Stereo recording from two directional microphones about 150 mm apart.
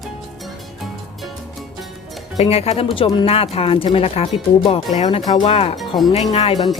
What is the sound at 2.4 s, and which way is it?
Speech, 45° left (ahead or behind).